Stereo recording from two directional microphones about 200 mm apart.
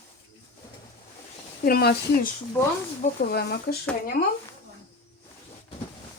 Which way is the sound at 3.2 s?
50° left (ahead or behind).